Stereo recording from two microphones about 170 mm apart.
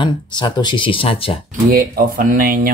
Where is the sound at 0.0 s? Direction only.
25° left (ahead or behind).